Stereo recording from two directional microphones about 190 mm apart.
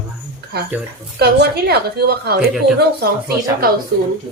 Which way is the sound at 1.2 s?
55° right (ahead or behind).